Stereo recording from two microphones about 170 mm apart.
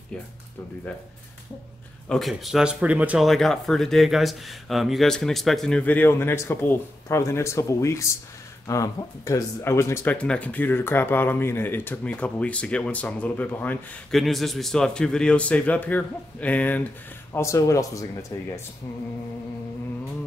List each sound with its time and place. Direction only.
2.0 s speech: centre (ahead or behind); by 18.5 s 20° left (ahead or behind)